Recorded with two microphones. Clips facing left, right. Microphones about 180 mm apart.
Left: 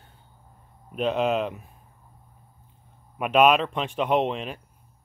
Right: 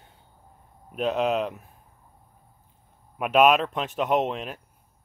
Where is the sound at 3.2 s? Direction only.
5° right (ahead or behind).